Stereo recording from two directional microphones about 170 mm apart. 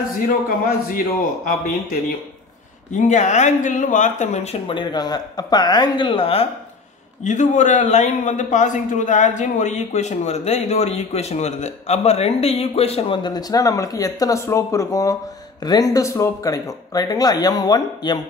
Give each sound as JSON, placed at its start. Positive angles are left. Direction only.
{"t": 0.5, "sound": "a man's voice", "side_deg": 55}
{"t": 3.0, "sound": "a man's voice", "side_deg": 45}
{"t": 7.2, "sound": "a man's voice", "side_deg": 45}